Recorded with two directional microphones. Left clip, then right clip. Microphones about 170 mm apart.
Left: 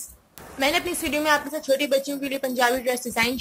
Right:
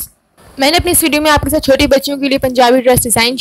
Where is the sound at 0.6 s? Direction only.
60° right (ahead or behind).